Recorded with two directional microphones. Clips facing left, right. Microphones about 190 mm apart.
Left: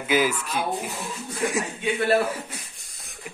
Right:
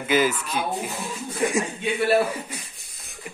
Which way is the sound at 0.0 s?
5° left (ahead or behind).